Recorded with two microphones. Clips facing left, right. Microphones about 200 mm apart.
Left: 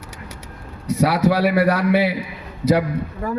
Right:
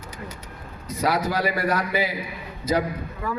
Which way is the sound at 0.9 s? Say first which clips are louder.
Left 7 dB; 75° left (ahead or behind).